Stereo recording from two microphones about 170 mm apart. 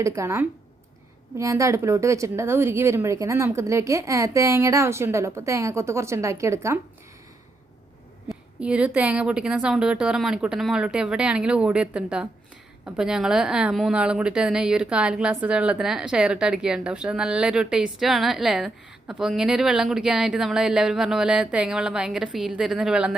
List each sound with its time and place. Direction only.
0.0 s speech: 15° right (ahead or behind)
8.3 s a woman's voice: 5° right (ahead or behind)